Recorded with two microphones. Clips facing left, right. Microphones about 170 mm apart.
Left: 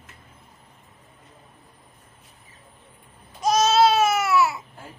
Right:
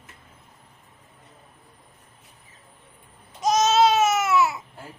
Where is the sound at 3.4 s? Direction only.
20° right (ahead or behind).